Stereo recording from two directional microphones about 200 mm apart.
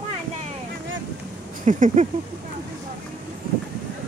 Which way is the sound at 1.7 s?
40° right (ahead or behind).